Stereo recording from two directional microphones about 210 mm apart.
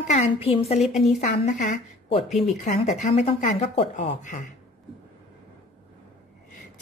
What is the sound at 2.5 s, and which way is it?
Speech, 35° left (ahead or behind).